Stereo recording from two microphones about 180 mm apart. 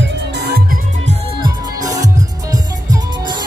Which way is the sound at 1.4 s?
20° right (ahead or behind).